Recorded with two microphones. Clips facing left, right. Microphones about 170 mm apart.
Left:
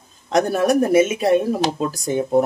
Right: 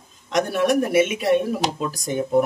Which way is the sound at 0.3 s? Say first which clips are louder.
Left 3 dB; 40° left (ahead or behind).